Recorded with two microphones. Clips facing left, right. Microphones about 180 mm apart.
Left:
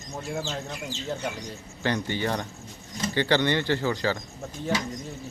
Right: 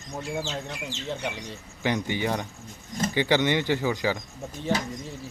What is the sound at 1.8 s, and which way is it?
Speech, 15° right (ahead or behind).